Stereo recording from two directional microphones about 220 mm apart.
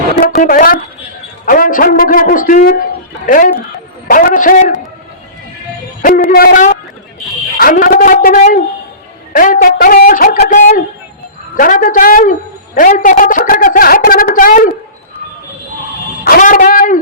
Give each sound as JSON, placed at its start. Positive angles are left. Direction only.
{"t": 0.2, "sound": "a woman's voice", "side_deg": 40}
{"t": 6.0, "sound": "a woman's voice", "side_deg": 40}
{"t": 16.2, "sound": "a woman's voice", "side_deg": 40}